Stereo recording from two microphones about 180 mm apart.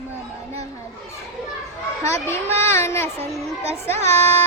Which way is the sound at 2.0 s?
15° left (ahead or behind).